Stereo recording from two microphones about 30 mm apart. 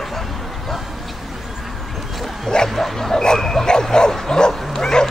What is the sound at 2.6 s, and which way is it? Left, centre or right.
Bow-wow, centre.